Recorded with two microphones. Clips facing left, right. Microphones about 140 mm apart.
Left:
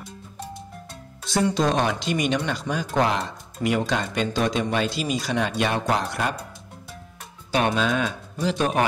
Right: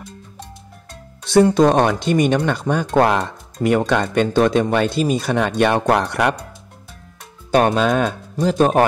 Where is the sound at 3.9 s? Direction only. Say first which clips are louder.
Right 7 dB; 60° right (ahead or behind).